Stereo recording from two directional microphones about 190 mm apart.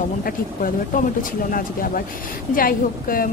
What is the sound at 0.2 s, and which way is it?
A woman's voice, 45° left (ahead or behind).